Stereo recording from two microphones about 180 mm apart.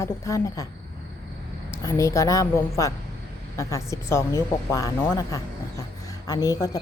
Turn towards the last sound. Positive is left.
turn(degrees=20)  # may be behind; listen again after turning